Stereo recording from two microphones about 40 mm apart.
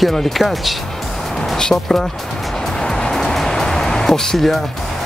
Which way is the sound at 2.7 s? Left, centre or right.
Centre.